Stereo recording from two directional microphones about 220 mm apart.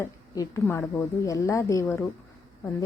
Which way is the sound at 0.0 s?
10° left (ahead or behind).